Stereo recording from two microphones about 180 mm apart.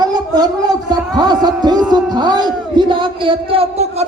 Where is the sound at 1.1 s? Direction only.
25° right (ahead or behind).